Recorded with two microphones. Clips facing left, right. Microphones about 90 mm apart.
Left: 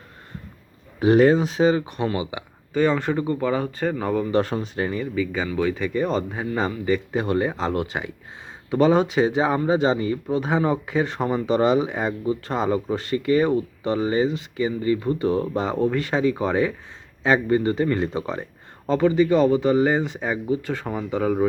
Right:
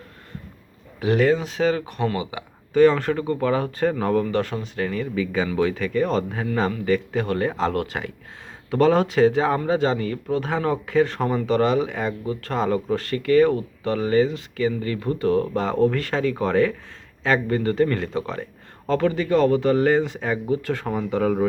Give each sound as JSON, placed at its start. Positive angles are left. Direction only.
{"t": 0.9, "sound": "speech", "side_deg": 25}
{"t": 2.3, "sound": "speech", "side_deg": 5}
{"t": 4.3, "sound": "speech", "side_deg": 25}
{"t": 5.1, "sound": "speech", "side_deg": 0}
{"t": 5.8, "sound": "speech", "side_deg": 10}